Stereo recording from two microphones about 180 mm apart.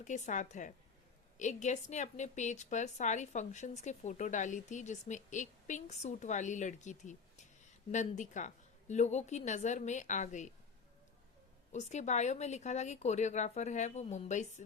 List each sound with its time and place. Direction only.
0.0 s a woman's voice: 40° left (ahead or behind)
11.7 s a woman's voice: 40° left (ahead or behind)